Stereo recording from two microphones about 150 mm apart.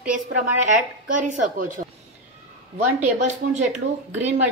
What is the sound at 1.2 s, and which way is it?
Speech, 55° right (ahead or behind).